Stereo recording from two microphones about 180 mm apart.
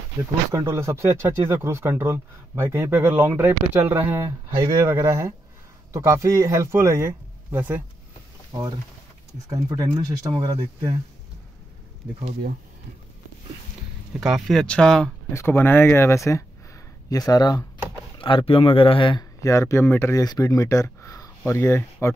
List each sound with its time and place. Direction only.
0.5 s speech: 15° right (ahead or behind)
8.5 s speech: 20° right (ahead or behind)
14.2 s speech: centre (ahead or behind); by 22.1 s 15° left (ahead or behind)